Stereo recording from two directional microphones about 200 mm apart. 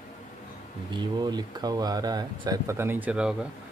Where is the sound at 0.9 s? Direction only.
20° right (ahead or behind); by 3.5 s 5° right (ahead or behind).